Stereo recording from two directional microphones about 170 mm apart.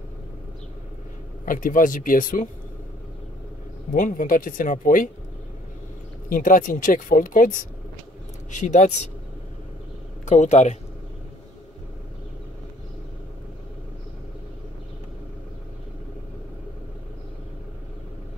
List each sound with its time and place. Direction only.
1.4 s speech: 55° left (ahead or behind)
3.9 s speech: 55° left (ahead or behind)
6.2 s speech: 55° left (ahead or behind)
10.2 s speech: 45° left (ahead or behind)